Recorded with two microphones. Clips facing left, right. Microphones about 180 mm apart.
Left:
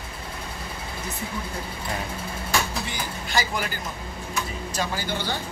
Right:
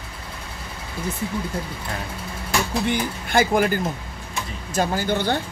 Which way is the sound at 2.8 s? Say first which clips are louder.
Right 8 dB; 55° right (ahead or behind).